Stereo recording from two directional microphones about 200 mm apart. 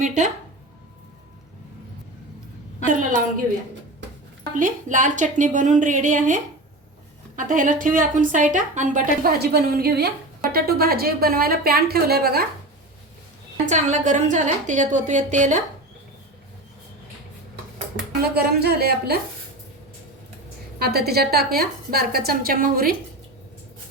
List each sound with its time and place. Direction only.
2.8 s a woman's voice: 40° right (ahead or behind)
4.5 s a woman's voice: 40° right (ahead or behind)
13.7 s a woman's voice: 35° right (ahead or behind)
18.2 s a woman's voice: 50° right (ahead or behind)
20.7 s a woman's voice: 50° right (ahead or behind)